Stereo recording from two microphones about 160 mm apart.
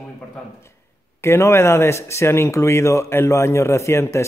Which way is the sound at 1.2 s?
15° left (ahead or behind).